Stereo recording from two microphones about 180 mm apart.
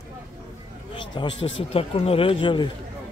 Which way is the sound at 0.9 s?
25° left (ahead or behind).